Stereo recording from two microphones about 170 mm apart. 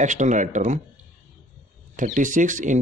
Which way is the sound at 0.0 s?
45° right (ahead or behind).